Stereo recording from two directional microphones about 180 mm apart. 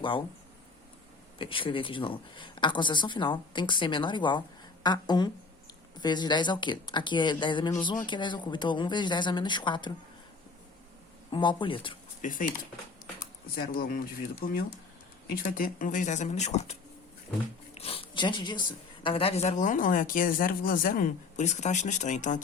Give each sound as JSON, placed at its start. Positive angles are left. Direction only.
{"t": 1.4, "sound": "speech", "side_deg": 30}
{"t": 11.3, "sound": "speech", "side_deg": 25}
{"t": 12.2, "sound": "speech", "side_deg": 50}
{"t": 17.7, "sound": "speech", "side_deg": 30}